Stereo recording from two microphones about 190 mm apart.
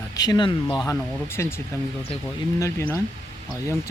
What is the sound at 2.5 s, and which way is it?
Speech, 15° left (ahead or behind).